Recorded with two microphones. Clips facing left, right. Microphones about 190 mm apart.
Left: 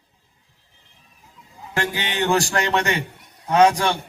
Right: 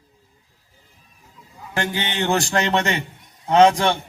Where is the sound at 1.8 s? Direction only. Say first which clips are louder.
Even; 25° right (ahead or behind).